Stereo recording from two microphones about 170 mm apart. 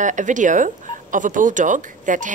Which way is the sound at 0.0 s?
45° right (ahead or behind).